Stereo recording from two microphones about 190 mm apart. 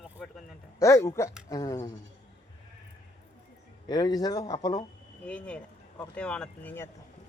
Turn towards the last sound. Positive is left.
turn(degrees=10)  # may be behind; listen again after turning